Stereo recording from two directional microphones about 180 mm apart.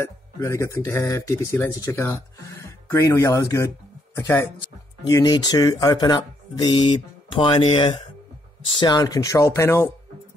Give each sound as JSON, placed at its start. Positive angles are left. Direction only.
{"t": 0.0, "sound": "speech", "side_deg": 15}